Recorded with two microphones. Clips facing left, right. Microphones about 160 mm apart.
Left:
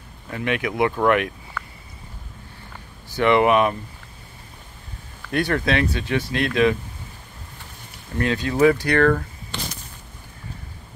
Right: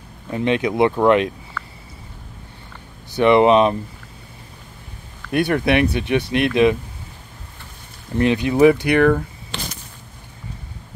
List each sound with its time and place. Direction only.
0.3 s speech: 25° right (ahead or behind)
3.2 s speech: 20° right (ahead or behind)
5.3 s speech: 20° right (ahead or behind)
8.2 s speech: 20° right (ahead or behind)